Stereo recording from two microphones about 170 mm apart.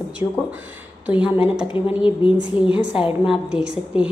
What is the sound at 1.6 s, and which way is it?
Speech, 30° left (ahead or behind).